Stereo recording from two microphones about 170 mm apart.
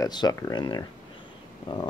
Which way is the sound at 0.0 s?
25° left (ahead or behind).